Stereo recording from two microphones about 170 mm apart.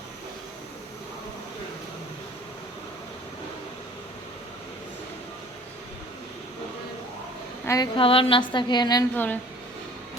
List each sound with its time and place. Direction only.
7.6 s speech: 15° left (ahead or behind)
7.9 s a woman's voice: 30° left (ahead or behind)
9.1 s speech: 10° left (ahead or behind)